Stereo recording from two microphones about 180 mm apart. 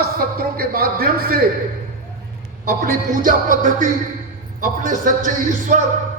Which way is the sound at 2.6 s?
50° right (ahead or behind).